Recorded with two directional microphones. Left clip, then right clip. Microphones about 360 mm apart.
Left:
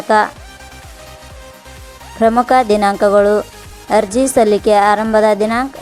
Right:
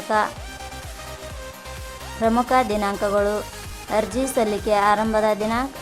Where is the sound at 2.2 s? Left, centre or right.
Centre.